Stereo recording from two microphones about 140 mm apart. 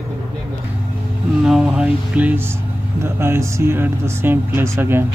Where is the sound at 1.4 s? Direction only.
5° right (ahead or behind).